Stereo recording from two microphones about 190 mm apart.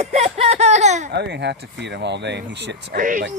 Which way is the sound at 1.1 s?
65° right (ahead or behind).